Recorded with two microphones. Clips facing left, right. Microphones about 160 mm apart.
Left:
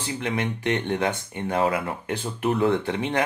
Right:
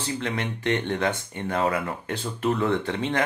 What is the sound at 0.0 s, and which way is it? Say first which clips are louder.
Speech: left 1 dB; 15° left (ahead or behind).